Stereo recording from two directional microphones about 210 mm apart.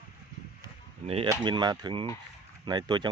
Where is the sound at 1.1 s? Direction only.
30° right (ahead or behind).